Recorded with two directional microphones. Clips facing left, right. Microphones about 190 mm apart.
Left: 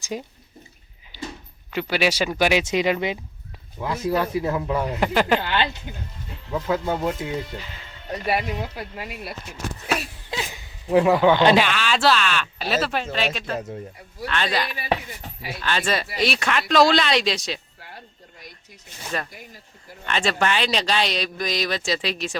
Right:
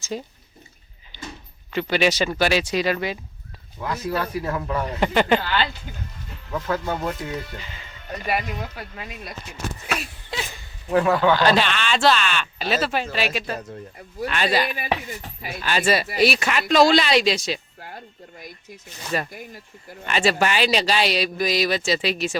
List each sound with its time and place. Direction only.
0.0 s speech: 10° left (ahead or behind)
1.1 s a sound: 5° left (ahead or behind)
1.7 s speech: 10° left (ahead or behind)
5.4 s speech: 20° left (ahead or behind)
7.6 s speech: centre (ahead or behind)
8.6 s speech: 10° left (ahead or behind)
10.5 s speech: 15° left (ahead or behind); by 17.6 s centre (ahead or behind)
19.1 s speech: 10° right (ahead or behind)